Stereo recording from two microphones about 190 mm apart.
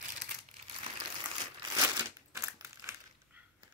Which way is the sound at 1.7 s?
15° right (ahead or behind).